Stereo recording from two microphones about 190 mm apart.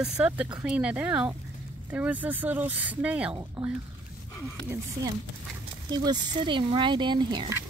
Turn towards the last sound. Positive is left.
turn(degrees=-25)  # may be behind; listen again after turning